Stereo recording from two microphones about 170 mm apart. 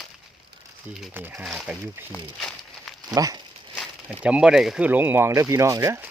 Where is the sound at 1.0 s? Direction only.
10° right (ahead or behind).